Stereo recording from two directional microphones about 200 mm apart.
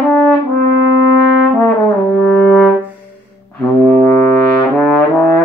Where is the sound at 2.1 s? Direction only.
5° left (ahead or behind).